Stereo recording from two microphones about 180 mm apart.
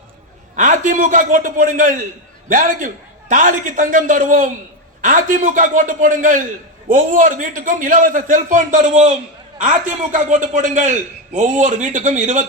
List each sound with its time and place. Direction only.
0.5 s a man's voice: 45° right (ahead or behind)